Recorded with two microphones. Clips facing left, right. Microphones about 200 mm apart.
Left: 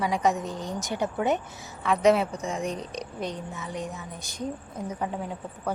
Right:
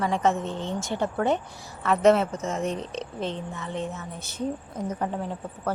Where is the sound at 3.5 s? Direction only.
Centre (ahead or behind).